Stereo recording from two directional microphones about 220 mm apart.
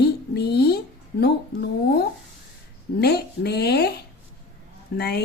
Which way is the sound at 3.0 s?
45° left (ahead or behind).